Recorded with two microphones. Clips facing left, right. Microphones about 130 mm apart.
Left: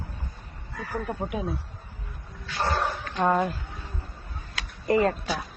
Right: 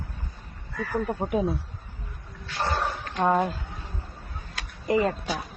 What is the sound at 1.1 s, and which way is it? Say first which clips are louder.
Speech: right 2 dB; 15° right (ahead or behind).